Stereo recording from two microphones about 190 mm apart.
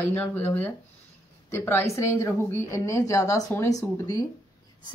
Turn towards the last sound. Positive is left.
turn(degrees=20)  # may be behind; listen again after turning